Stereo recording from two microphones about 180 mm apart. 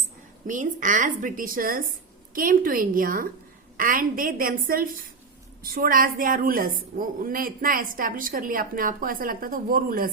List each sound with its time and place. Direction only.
0.4 s a woman's voice: 45° right (ahead or behind)